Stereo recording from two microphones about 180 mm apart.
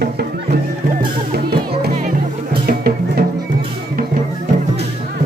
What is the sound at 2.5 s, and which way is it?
Music, 60° right (ahead or behind).